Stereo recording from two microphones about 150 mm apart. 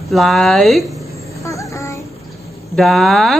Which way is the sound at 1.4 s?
20° left (ahead or behind).